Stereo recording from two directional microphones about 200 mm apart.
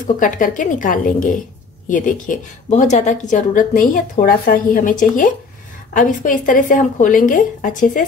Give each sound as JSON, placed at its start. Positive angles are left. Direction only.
{"t": 0.0, "sound": "a woman's voice", "side_deg": 40}